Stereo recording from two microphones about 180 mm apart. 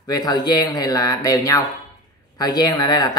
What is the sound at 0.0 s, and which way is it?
Speech, 20° left (ahead or behind).